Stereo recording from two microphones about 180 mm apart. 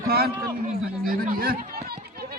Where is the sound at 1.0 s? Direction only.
55° right (ahead or behind).